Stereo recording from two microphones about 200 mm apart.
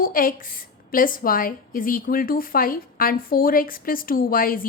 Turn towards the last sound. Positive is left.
turn(degrees=45)  # may be behind; listen again after turning